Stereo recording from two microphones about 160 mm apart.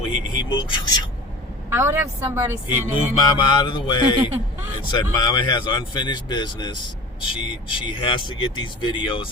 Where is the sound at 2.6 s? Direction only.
30° left (ahead or behind).